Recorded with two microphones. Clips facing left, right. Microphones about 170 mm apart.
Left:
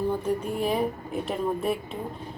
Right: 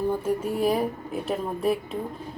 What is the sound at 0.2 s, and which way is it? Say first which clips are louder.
A woman's voice: right 2 dB; 5° right (ahead or behind).